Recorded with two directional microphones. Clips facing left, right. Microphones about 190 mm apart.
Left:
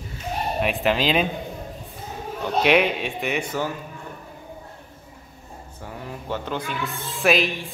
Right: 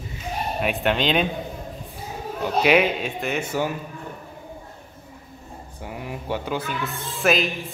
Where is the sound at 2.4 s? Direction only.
Centre (ahead or behind).